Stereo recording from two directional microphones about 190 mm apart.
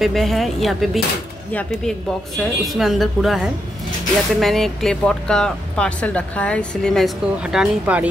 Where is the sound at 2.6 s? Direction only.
Centre (ahead or behind).